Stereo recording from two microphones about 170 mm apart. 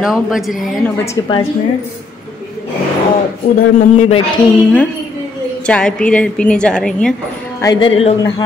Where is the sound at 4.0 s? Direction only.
35° left (ahead or behind).